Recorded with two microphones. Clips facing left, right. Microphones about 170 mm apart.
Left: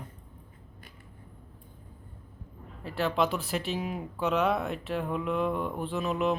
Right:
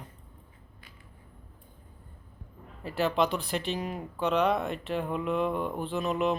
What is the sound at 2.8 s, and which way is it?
Speech, centre (ahead or behind).